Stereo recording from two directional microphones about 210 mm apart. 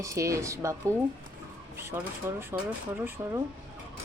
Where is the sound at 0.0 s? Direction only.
15° right (ahead or behind).